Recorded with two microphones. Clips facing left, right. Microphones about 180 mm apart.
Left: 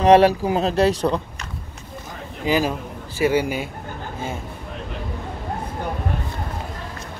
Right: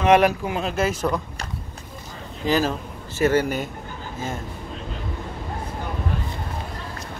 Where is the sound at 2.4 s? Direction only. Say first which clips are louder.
Left 1 dB; 10° left (ahead or behind).